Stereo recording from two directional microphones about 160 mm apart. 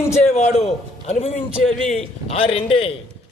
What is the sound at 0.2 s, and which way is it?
A man's voice, 45° left (ahead or behind).